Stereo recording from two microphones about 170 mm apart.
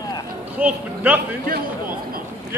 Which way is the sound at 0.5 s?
10° right (ahead or behind).